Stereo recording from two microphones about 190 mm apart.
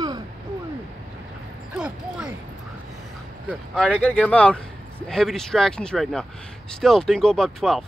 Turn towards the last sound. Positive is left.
turn(degrees=0)  # may be behind; listen again after turning